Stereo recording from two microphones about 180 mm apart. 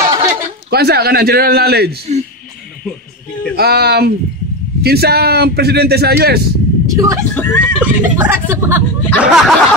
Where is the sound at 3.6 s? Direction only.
60° right (ahead or behind).